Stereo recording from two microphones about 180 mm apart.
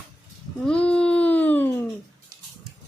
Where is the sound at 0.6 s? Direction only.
5° left (ahead or behind).